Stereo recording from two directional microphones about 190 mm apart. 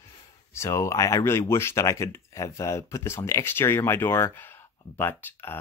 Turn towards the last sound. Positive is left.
turn(degrees=10)  # may be behind; listen again after turning